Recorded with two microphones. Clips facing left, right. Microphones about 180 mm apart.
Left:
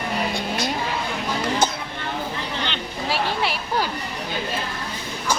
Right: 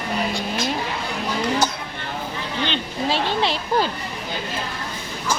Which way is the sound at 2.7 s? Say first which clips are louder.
Right 3 dB; 25° right (ahead or behind).